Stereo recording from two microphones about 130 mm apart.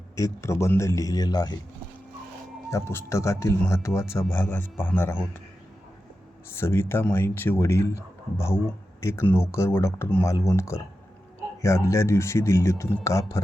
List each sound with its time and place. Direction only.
0.4 s speech: 20° left (ahead or behind)
2.6 s speech: 20° left (ahead or behind)
6.5 s speech: 20° left (ahead or behind)